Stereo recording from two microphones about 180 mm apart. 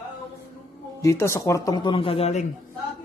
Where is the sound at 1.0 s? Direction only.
15° left (ahead or behind); by 2.4 s 35° left (ahead or behind).